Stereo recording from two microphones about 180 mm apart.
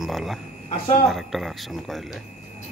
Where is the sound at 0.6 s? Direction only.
35° left (ahead or behind).